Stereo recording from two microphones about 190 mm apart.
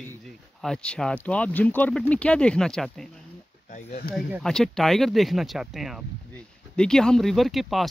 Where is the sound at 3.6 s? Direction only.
40° left (ahead or behind).